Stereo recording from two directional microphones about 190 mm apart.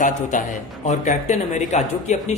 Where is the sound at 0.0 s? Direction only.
40° left (ahead or behind).